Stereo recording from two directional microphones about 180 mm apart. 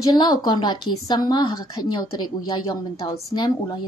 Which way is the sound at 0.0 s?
25° left (ahead or behind).